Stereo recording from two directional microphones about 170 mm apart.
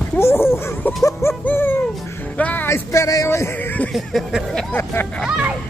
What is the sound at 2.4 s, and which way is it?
Speech, 10° left (ahead or behind).